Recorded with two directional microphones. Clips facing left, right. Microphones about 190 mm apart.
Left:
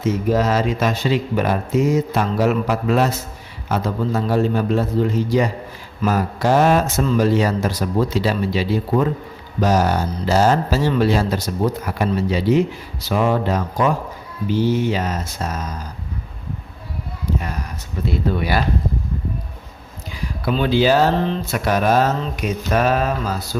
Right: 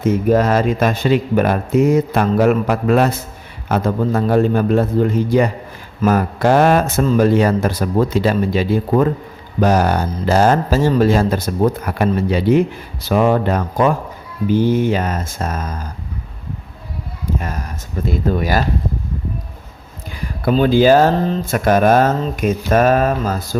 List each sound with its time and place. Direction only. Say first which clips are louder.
0.0 s speech: right 4 dB; 55° right (ahead or behind)
17.2 s a sound: right 1 dB; 45° right (ahead or behind)
18.0 s speech: right 3 dB; 45° right (ahead or behind)
20.4 s speech: right 5 dB; 45° right (ahead or behind)